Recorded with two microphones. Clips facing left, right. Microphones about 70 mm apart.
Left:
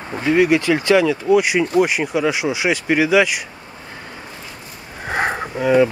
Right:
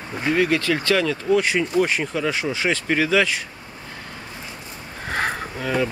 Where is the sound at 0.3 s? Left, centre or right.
Centre.